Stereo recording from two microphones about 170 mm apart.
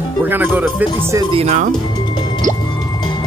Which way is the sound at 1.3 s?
40° right (ahead or behind).